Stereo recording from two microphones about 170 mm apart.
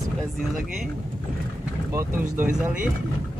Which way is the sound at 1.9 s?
15° right (ahead or behind).